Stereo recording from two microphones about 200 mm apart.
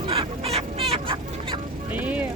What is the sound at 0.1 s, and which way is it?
Chicken, 30° right (ahead or behind).